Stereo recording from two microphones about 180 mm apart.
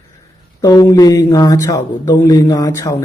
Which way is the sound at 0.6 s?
20° left (ahead or behind).